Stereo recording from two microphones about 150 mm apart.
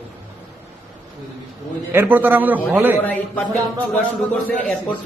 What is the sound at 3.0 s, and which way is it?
Speech, 10° left (ahead or behind).